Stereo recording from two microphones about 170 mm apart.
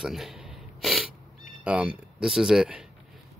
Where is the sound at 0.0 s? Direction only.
Centre (ahead or behind).